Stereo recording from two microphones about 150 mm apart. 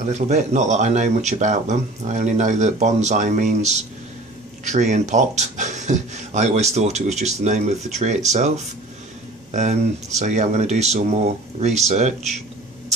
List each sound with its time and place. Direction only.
0.1 s speech: 50° right (ahead or behind)